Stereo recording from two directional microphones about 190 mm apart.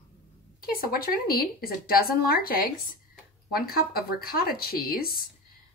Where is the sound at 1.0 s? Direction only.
50° left (ahead or behind).